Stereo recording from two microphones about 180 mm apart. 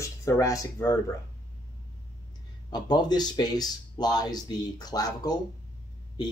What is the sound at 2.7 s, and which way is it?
Speech, 25° left (ahead or behind).